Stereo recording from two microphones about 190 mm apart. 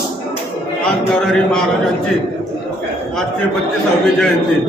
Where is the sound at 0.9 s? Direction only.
5° left (ahead or behind).